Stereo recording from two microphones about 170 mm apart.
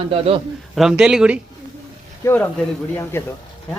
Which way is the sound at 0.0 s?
35° right (ahead or behind).